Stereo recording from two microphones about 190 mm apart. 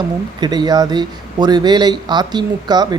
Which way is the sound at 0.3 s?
20° right (ahead or behind).